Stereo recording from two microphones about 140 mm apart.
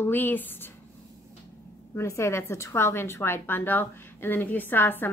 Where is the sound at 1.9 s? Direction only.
20° left (ahead or behind).